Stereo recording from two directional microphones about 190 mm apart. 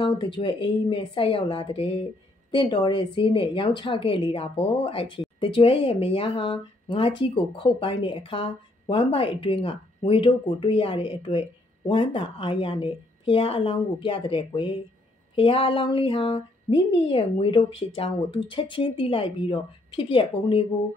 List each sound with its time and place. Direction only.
0.0 s speech: 25° left (ahead or behind)